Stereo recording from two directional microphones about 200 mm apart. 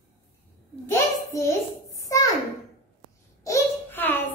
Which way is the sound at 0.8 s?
15° left (ahead or behind).